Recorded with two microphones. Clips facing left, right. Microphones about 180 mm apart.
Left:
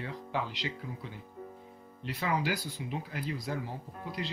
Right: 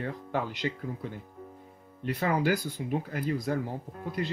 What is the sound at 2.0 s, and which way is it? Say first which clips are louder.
Speech: right 5 dB; 50° right (ahead or behind).